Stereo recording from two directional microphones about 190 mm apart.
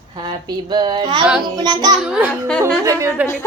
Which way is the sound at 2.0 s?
5° right (ahead or behind).